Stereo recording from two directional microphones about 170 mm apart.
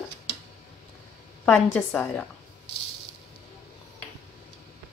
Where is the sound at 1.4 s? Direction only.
5° left (ahead or behind).